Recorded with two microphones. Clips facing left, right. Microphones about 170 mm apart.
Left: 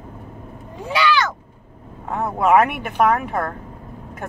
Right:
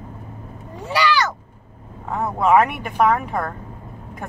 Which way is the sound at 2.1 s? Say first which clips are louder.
Even; 5° left (ahead or behind).